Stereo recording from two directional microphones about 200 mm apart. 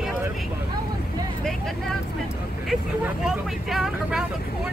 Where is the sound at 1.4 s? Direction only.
Centre (ahead or behind).